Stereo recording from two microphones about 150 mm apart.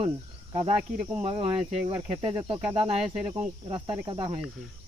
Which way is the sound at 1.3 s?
40° right (ahead or behind).